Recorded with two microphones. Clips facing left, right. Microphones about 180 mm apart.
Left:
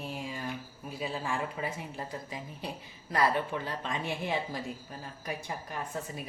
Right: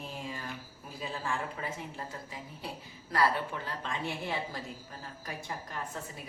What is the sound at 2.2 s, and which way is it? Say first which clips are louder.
A woman's voice: left 3 dB; 15° left (ahead or behind).